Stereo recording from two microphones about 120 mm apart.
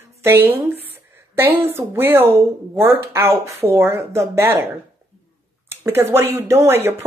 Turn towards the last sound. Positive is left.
turn(degrees=-20)  # may be behind; listen again after turning